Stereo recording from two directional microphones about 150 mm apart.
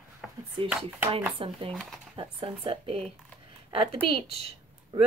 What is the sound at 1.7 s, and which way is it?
Speech, 5° left (ahead or behind).